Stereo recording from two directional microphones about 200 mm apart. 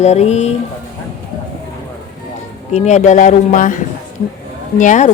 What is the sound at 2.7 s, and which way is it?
A woman's voice, 35° left (ahead or behind).